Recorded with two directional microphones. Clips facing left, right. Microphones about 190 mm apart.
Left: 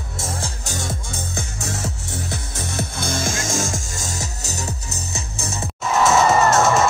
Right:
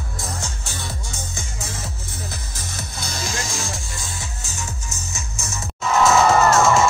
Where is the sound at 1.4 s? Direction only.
75° left (ahead or behind).